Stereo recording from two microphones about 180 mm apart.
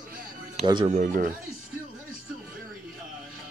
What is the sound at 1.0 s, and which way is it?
Speech, 50° right (ahead or behind).